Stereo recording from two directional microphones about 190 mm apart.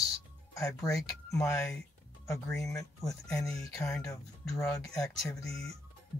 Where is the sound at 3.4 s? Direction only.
5° left (ahead or behind).